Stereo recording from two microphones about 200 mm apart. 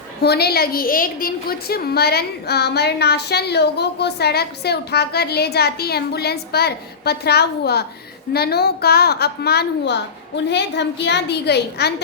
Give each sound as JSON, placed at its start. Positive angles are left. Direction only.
{"t": 0.2, "sound": "a woman's voice", "side_deg": 55}